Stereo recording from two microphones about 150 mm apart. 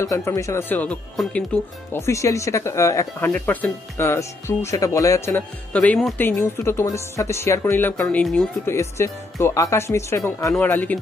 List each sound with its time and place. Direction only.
0.0 s speech: 20° left (ahead or behind)
2.0 s speech: 20° left (ahead or behind)
6.1 s speech: 15° left (ahead or behind)
8.6 s speech: 20° left (ahead or behind)